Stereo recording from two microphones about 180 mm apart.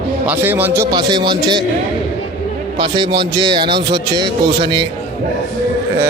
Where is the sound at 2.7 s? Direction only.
25° right (ahead or behind).